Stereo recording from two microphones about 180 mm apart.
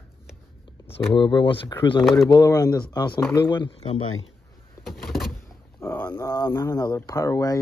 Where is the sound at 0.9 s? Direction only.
30° left (ahead or behind).